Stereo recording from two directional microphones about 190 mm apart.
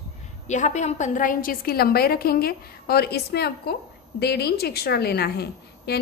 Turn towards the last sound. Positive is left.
turn(degrees=55)  # may be behind; listen again after turning